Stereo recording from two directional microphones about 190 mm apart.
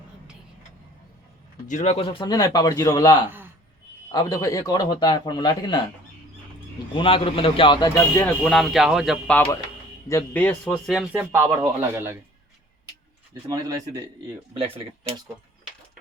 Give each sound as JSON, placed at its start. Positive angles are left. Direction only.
{"t": 1.6, "sound": "a man's voice", "side_deg": 40}
{"t": 3.2, "sound": "a sound", "side_deg": -10}
{"t": 4.1, "sound": "a man's voice", "side_deg": 20}
{"t": 6.9, "sound": "a man's voice", "side_deg": 30}
{"t": 7.9, "sound": "speech", "side_deg": 15}
{"t": 8.5, "sound": "a man's voice", "side_deg": 0}
{"t": 13.5, "sound": "speech", "side_deg": -20}